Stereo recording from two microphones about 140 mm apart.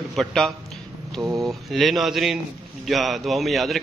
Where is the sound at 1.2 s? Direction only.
25° right (ahead or behind).